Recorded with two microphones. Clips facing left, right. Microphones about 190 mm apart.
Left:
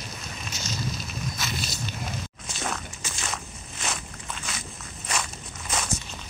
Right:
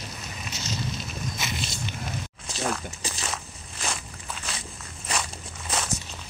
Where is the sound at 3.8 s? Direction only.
Centre (ahead or behind).